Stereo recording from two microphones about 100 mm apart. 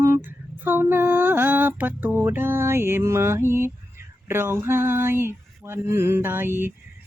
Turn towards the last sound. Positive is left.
turn(degrees=-20)  # may be behind; listen again after turning